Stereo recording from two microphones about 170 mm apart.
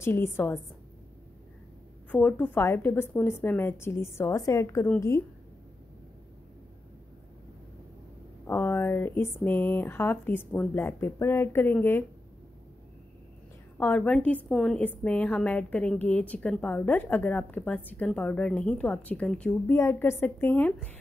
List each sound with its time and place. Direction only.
0.0 s a woman's voice: 15° left (ahead or behind)
2.0 s a woman's voice: 10° left (ahead or behind)
8.5 s a woman's voice: 15° left (ahead or behind)
13.7 s a woman's voice: 10° left (ahead or behind)